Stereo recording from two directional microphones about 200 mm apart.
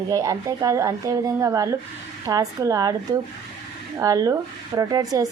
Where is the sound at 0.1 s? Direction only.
15° right (ahead or behind).